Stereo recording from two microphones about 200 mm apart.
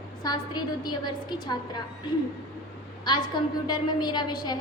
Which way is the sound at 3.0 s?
20° left (ahead or behind).